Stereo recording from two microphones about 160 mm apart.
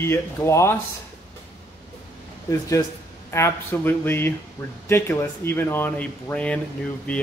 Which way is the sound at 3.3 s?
15° left (ahead or behind).